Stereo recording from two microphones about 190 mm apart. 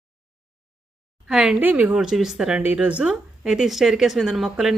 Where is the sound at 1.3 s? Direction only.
5° right (ahead or behind).